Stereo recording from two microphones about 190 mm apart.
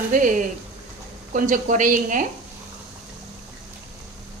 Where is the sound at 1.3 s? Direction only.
45° right (ahead or behind).